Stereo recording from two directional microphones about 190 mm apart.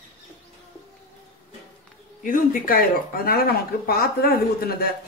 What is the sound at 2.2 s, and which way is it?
Speech, 45° left (ahead or behind).